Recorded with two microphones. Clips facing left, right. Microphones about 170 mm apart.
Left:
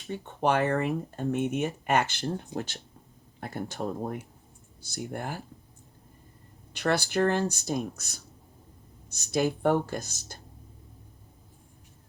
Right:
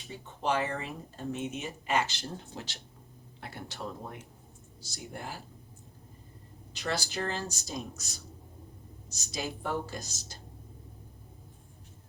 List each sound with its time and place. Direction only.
0.1 s speech: 60° left (ahead or behind)
6.7 s speech: 60° left (ahead or behind)
10.3 s whispering: 55° left (ahead or behind)